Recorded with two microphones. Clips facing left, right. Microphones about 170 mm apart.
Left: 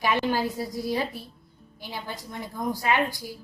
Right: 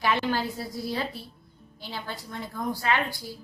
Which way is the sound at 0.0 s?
15° left (ahead or behind).